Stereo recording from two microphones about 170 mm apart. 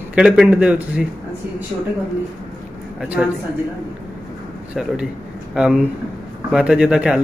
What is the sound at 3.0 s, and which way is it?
Speech, 5° right (ahead or behind).